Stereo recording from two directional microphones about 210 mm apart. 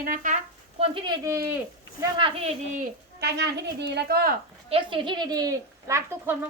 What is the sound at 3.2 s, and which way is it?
A woman's voice, 50° right (ahead or behind).